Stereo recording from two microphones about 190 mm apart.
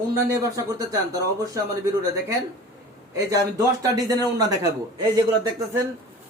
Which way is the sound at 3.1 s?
20° right (ahead or behind).